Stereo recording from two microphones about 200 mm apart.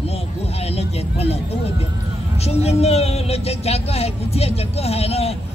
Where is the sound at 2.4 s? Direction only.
30° left (ahead or behind).